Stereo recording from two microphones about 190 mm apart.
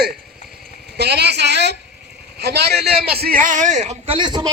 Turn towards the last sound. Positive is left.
turn(degrees=-25)  # may be behind; listen again after turning